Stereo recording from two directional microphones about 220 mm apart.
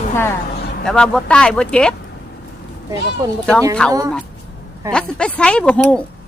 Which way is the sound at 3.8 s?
5° left (ahead or behind).